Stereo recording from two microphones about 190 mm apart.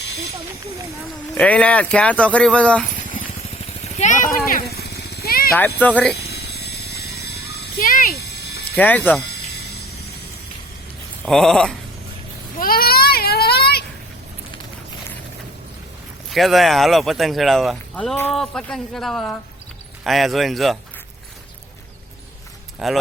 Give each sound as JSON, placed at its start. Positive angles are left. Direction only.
{"t": 1.4, "sound": "speech", "side_deg": 5}
{"t": 3.9, "sound": "vehicle", "side_deg": 40}
{"t": 5.5, "sound": "speech", "side_deg": 10}
{"t": 6.2, "sound": "a sound", "side_deg": 55}
{"t": 8.7, "sound": "speech", "side_deg": 10}
{"t": 9.6, "sound": "vehicle", "side_deg": 55}
{"t": 11.3, "sound": "speech", "side_deg": 0}
{"t": 12.5, "sound": "baby cry", "side_deg": 50}
{"t": 16.3, "sound": "speech", "side_deg": 0}
{"t": 22.8, "sound": "speech", "side_deg": 0}